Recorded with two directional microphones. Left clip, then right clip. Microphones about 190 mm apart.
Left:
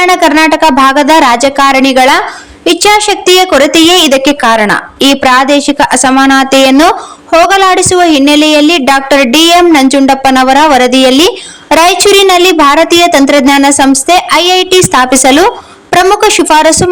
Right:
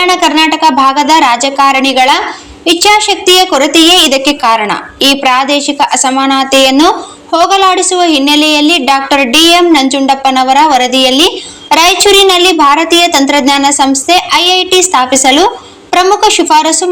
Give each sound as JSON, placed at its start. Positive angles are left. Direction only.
{"t": 0.0, "sound": "a woman's voice", "side_deg": 50}